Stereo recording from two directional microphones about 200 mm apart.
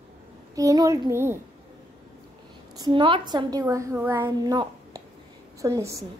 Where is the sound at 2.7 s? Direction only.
20° right (ahead or behind).